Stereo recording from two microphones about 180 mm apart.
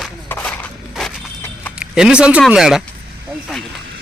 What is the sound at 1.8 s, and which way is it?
Speech, 5° right (ahead or behind).